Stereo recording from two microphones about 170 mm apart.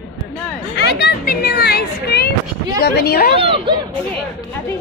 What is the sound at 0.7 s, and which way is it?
Speech, 75° left (ahead or behind).